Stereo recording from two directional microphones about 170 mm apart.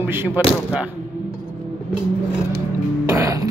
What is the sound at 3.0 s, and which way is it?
Music, 20° right (ahead or behind).